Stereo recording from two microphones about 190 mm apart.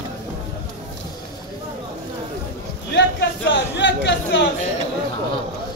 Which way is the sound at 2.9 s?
70° left (ahead or behind).